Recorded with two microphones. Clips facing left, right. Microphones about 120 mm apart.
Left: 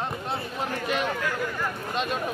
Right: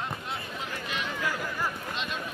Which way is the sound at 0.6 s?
50° left (ahead or behind).